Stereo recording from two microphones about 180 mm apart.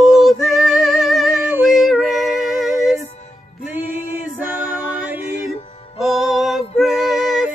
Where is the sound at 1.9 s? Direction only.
Centre (ahead or behind).